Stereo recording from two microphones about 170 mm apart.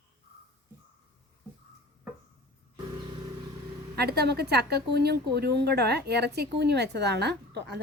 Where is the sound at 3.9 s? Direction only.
70° right (ahead or behind).